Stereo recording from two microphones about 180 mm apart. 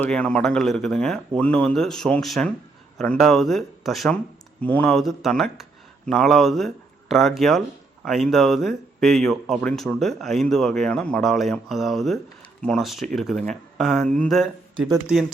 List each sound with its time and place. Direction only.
0.0 s speech: 5° left (ahead or behind)